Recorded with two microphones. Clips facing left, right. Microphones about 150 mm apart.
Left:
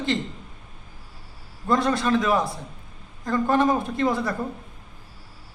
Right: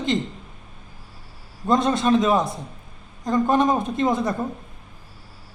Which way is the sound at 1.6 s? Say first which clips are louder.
Right 3 dB; 20° right (ahead or behind).